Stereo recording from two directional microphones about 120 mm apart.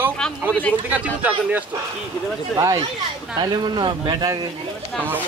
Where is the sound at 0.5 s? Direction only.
10° left (ahead or behind).